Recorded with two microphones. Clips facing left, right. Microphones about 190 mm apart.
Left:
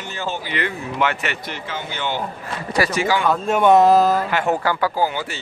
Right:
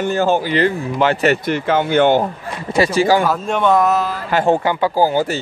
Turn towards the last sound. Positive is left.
turn(degrees=-40)  # may be behind; listen again after turning